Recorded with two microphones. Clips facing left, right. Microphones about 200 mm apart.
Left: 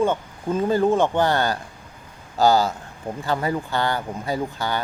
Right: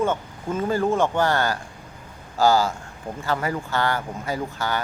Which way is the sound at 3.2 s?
20° left (ahead or behind).